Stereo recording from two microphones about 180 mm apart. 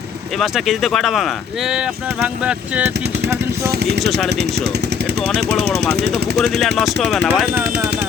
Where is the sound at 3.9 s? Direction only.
Centre (ahead or behind).